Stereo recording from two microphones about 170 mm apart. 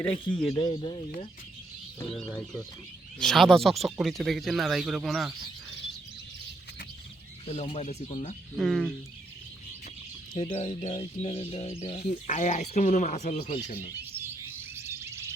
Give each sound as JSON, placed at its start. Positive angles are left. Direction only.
{"t": 0.0, "sound": "speech", "side_deg": 10}
{"t": 0.3, "sound": "speech", "side_deg": 30}
{"t": 3.2, "sound": "speech", "side_deg": 0}
{"t": 7.4, "sound": "speech", "side_deg": 35}
{"t": 8.5, "sound": "speech", "side_deg": 0}
{"t": 10.3, "sound": "speech", "side_deg": 35}
{"t": 14.0, "sound": "bird", "side_deg": -15}